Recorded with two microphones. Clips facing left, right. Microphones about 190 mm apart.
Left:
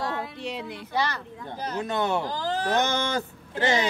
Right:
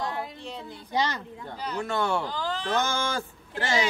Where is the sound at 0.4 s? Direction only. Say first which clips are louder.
Left 5 dB; 75° left (ahead or behind).